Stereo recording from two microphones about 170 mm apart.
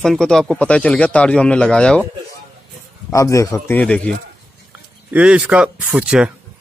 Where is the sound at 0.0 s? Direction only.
Centre (ahead or behind).